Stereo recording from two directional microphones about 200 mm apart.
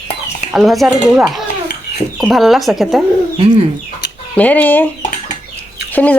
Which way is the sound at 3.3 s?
30° right (ahead or behind).